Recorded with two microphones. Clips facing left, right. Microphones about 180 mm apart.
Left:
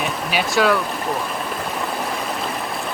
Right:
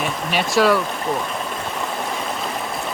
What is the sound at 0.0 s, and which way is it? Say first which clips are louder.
Stream: even; centre (ahead or behind).